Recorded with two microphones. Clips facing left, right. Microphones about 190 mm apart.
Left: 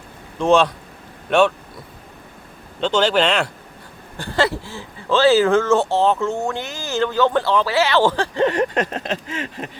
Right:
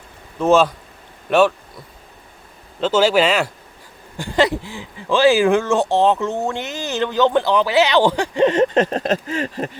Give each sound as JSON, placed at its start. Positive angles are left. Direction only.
{"t": 0.3, "sound": "speech", "side_deg": -5}
{"t": 2.8, "sound": "speech", "side_deg": -5}
{"t": 4.2, "sound": "speech", "side_deg": -15}